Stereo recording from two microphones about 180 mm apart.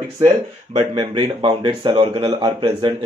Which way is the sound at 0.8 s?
30° right (ahead or behind).